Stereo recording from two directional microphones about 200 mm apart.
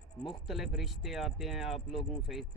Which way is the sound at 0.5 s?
Centre (ahead or behind).